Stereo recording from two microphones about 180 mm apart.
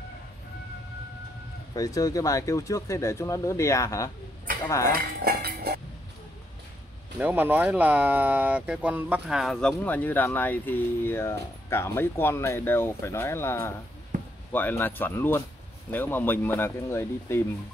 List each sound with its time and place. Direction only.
1.8 s speech: 20° left (ahead or behind)
4.8 s speech: 60° right (ahead or behind)
7.2 s speech: 10° right (ahead or behind); by 13.7 s 15° left (ahead or behind)
14.1 s basketball bounce: 45° right (ahead or behind)
14.5 s speech: 10° left (ahead or behind)